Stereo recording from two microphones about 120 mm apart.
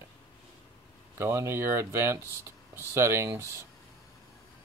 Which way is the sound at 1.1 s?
20° right (ahead or behind).